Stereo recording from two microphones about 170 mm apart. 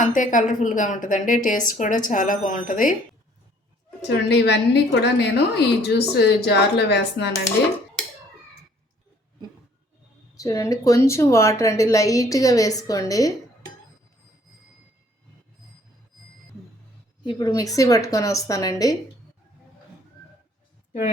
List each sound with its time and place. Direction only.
0.0 s a woman's voice: 50° left (ahead or behind)
4.0 s a woman's voice: 85° left
10.3 s a woman's voice: 20° left (ahead or behind)
17.2 s a woman's voice: 25° left (ahead or behind)